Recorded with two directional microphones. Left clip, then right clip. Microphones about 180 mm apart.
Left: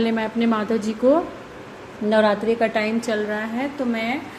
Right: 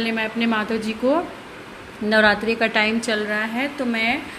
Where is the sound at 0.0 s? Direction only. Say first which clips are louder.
Left 1 dB; 25° left (ahead or behind).